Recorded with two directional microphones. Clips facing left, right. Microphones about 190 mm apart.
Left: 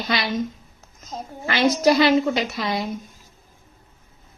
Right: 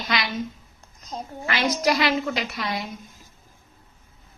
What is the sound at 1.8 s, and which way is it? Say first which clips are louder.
A woman's voice: left 7 dB; 30° left (ahead or behind).